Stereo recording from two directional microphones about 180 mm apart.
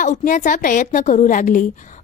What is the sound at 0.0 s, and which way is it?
A woman's voice, 45° left (ahead or behind).